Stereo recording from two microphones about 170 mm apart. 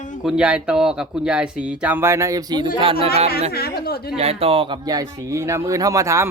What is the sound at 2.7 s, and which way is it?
Speech, 30° right (ahead or behind).